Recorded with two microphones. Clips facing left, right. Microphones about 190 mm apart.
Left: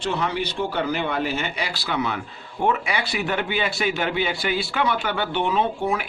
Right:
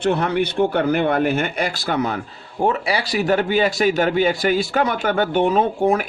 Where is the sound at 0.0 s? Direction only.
55° right (ahead or behind).